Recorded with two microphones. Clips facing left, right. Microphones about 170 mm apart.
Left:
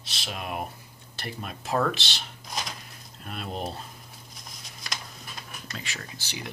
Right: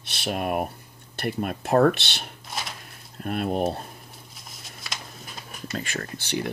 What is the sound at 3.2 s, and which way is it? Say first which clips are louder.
Speech: right 9 dB; 50° right (ahead or behind).